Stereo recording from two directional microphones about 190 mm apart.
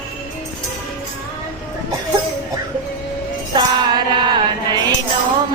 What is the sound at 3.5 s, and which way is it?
Music, 25° right (ahead or behind).